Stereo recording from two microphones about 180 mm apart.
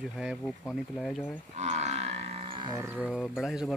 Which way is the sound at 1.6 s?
40° right (ahead or behind).